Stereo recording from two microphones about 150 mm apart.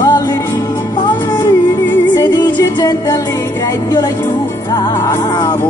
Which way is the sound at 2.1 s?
30° left (ahead or behind).